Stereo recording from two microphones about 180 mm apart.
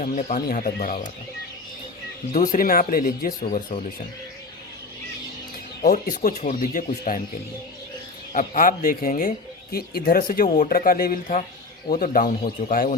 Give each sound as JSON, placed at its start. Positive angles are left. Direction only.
{"t": 0.0, "sound": "speech", "side_deg": 45}
{"t": 2.3, "sound": "speech", "side_deg": 50}
{"t": 3.4, "sound": "speech", "side_deg": 35}
{"t": 5.8, "sound": "speech", "side_deg": 55}
{"t": 8.3, "sound": "speech", "side_deg": 45}